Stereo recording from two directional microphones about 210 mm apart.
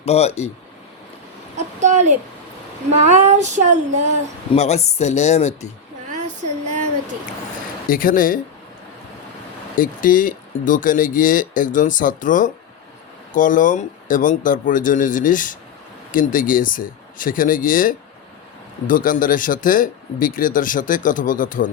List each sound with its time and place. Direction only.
0.0 s speech: 30° left (ahead or behind)
1.5 s child singing: 35° right (ahead or behind)
4.5 s speech: 30° left (ahead or behind)
7.9 s speech: 40° left (ahead or behind)
9.7 s speech: 40° left (ahead or behind)